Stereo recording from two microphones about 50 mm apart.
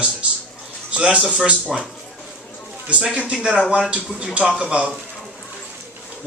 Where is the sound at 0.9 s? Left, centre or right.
Right.